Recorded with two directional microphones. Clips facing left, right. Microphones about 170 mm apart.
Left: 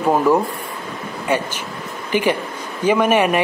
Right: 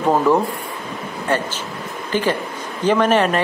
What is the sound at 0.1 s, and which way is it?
Speech, 10° left (ahead or behind).